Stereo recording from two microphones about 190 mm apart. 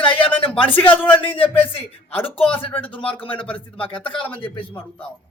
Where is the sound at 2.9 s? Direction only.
30° left (ahead or behind).